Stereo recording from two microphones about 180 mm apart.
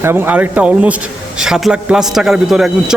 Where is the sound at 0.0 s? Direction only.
10° right (ahead or behind).